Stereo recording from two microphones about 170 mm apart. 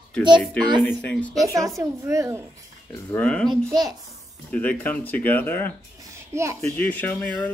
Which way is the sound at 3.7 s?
25° right (ahead or behind).